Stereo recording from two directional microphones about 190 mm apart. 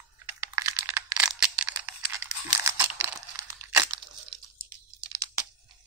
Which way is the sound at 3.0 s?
10° right (ahead or behind).